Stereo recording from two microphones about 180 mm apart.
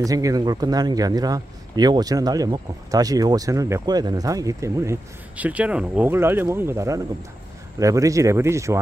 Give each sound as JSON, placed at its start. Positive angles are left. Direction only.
{"t": 0.0, "sound": "a man's voice", "side_deg": -20}